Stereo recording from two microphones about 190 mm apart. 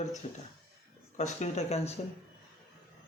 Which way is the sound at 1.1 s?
40° left (ahead or behind).